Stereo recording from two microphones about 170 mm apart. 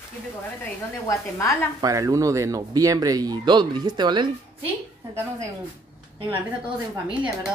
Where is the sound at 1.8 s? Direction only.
20° right (ahead or behind).